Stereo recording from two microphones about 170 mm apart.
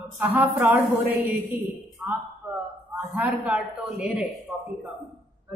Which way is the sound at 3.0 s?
Centre (ahead or behind).